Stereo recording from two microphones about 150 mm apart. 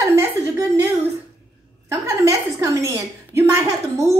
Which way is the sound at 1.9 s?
20° right (ahead or behind).